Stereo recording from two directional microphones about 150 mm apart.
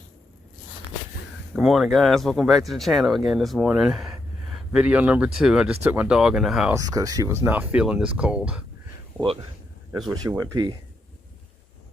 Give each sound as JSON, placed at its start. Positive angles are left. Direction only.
{"t": 1.5, "sound": "speech", "side_deg": 0}
{"t": 6.7, "sound": "speech", "side_deg": -25}
{"t": 10.2, "sound": "speech", "side_deg": -25}